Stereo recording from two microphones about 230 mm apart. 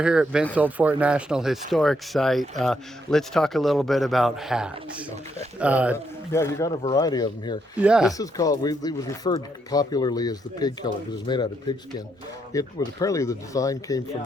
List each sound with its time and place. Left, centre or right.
0.0 s speech: centre
6.3 s speech: centre
7.8 s speech: centre
8.2 s speech: centre
12.5 s speech: centre